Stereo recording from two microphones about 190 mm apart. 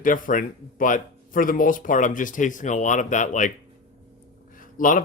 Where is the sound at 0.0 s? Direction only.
45° left (ahead or behind).